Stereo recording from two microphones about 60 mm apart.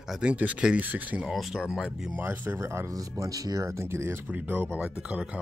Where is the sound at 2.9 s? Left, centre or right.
Right.